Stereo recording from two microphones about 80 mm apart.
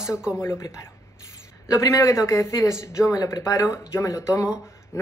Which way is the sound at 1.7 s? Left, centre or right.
Left.